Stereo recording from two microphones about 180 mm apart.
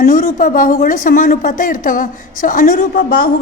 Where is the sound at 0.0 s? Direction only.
50° left (ahead or behind).